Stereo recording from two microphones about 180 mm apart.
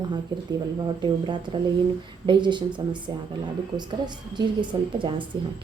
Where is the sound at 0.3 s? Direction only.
25° right (ahead or behind).